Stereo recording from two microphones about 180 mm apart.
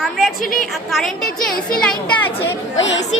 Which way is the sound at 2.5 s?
85° left.